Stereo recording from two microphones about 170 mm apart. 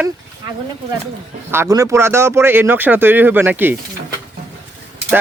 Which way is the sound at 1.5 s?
15° right (ahead or behind).